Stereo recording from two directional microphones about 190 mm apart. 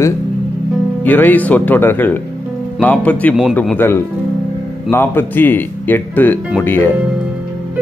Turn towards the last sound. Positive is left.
turn(degrees=10)  # may be behind; listen again after turning